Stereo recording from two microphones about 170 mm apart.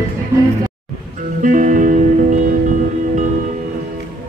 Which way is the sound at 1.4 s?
50° right (ahead or behind).